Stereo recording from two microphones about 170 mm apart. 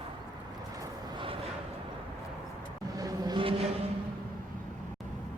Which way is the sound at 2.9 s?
20° right (ahead or behind).